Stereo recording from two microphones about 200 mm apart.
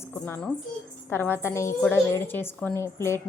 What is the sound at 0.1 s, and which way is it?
A woman's voice, 10° left (ahead or behind).